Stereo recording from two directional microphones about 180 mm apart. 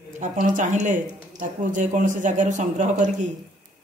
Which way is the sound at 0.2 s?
45° right (ahead or behind).